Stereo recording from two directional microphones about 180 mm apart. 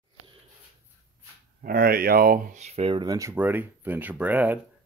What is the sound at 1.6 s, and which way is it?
Speech, 55° right (ahead or behind).